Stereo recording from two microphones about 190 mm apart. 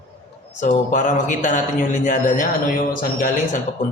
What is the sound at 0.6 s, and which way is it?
A man's voice, 40° left (ahead or behind).